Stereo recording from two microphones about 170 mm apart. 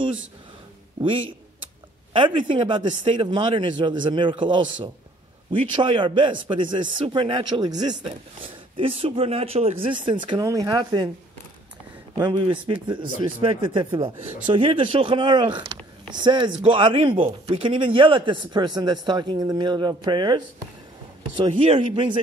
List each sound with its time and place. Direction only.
2.1 s a man's voice: 30° right (ahead or behind)
12.2 s a man's voice: 25° right (ahead or behind)